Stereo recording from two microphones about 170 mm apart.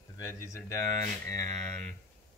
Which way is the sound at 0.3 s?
20° left (ahead or behind).